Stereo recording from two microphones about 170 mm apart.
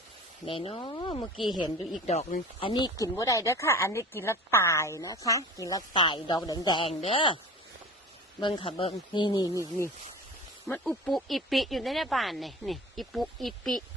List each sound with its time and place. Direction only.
0.4 s speech: 30° left (ahead or behind)
8.4 s speech: 30° left (ahead or behind)
10.7 s speech: 5° left (ahead or behind)